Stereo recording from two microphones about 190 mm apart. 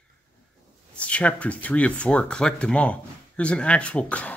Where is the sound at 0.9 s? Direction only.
5° left (ahead or behind).